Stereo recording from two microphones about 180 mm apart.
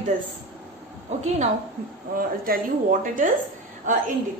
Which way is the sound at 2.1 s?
50° right (ahead or behind).